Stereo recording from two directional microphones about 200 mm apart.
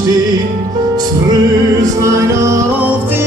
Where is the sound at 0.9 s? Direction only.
20° right (ahead or behind).